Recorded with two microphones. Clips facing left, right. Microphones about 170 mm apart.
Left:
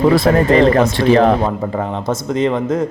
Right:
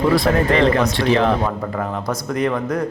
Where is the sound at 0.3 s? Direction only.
35° left (ahead or behind).